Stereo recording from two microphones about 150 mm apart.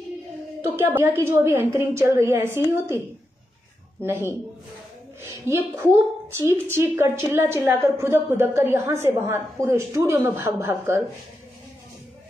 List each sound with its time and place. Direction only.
0.7 s a woman's voice: 15° right (ahead or behind)
4.0 s a woman's voice: 15° right (ahead or behind)